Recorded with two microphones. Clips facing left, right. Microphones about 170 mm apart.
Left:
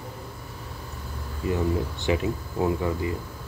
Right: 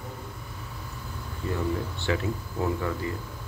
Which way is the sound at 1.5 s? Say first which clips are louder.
Left 4 dB; 15° left (ahead or behind).